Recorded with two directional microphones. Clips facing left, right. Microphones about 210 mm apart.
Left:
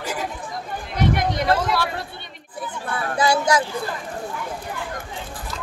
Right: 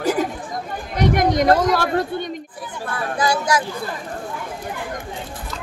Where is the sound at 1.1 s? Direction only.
45° right (ahead or behind).